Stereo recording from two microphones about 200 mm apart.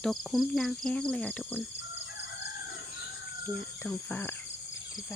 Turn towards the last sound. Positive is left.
turn(degrees=10)  # may be behind; listen again after turning